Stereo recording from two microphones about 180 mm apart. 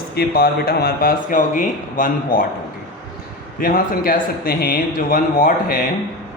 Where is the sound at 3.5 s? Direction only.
50° left (ahead or behind).